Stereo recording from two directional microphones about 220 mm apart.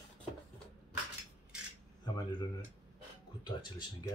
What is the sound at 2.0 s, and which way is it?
Speech, 20° left (ahead or behind).